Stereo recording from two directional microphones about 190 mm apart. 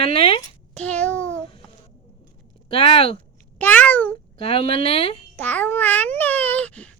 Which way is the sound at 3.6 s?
10° left (ahead or behind).